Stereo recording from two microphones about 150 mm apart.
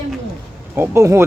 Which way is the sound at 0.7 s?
15° right (ahead or behind).